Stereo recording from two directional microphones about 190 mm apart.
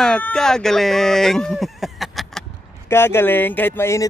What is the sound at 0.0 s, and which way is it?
Speech, centre (ahead or behind).